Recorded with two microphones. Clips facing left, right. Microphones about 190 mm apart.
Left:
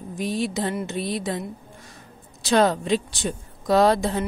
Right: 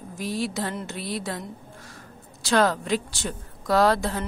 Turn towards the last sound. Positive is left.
turn(degrees=20)  # may be behind; listen again after turning